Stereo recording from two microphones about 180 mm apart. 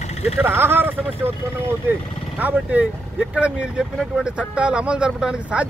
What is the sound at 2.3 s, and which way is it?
Speech, 10° right (ahead or behind).